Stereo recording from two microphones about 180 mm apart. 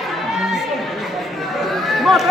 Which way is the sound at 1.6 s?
Centre (ahead or behind).